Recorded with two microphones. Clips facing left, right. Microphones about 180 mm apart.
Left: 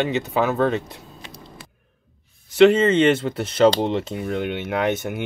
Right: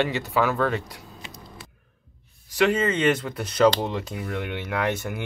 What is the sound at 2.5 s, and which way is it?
Speech, 25° left (ahead or behind).